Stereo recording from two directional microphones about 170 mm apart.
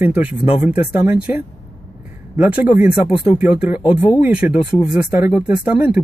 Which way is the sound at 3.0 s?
30° left (ahead or behind).